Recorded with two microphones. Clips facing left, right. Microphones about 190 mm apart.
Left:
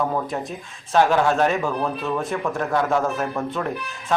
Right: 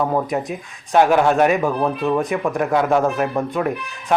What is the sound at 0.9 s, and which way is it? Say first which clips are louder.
Speech: right 3 dB; 15° right (ahead or behind).